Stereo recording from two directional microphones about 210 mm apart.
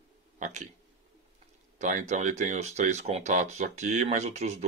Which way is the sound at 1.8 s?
35° right (ahead or behind).